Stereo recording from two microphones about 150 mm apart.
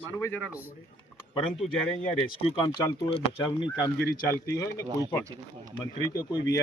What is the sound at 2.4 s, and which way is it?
Speech, 30° left (ahead or behind).